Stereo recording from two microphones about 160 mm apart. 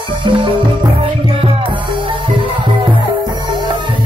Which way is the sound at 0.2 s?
30° right (ahead or behind).